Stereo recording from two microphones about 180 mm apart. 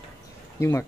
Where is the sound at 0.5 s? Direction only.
15° left (ahead or behind).